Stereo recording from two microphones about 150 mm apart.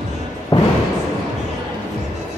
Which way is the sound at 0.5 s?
30° left (ahead or behind).